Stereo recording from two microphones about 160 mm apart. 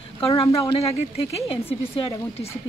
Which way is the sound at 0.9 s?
40° left (ahead or behind).